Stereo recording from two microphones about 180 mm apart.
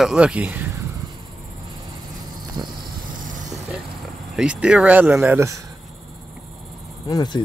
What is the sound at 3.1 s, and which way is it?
Vehicle, 45° right (ahead or behind).